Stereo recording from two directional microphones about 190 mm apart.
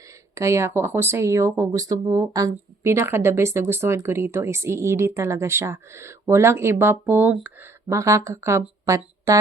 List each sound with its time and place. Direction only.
0.3 s speech: 15° right (ahead or behind)